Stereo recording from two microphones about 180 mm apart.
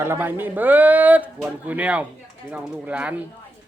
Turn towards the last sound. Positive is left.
turn(degrees=-5)  # may be behind; listen again after turning